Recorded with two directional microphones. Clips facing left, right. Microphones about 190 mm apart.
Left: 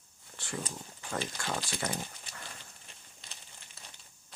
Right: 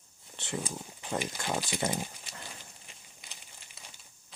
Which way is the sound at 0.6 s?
10° right (ahead or behind).